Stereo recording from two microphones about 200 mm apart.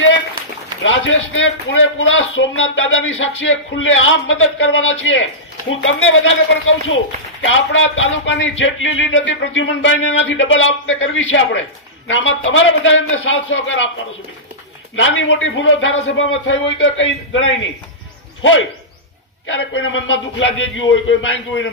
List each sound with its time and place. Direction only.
0.9 s a man's voice: 75° left (ahead or behind)
15.0 s a man's voice: 70° left (ahead or behind)
19.5 s a man's voice: 65° left (ahead or behind)